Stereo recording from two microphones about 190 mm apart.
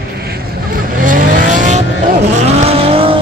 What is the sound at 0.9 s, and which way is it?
Vehicle, 45° right (ahead or behind).